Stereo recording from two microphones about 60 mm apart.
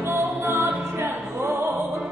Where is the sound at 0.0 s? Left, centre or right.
Right.